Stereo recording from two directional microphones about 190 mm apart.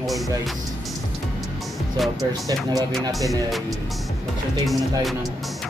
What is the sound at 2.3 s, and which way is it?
Speech, 20° right (ahead or behind).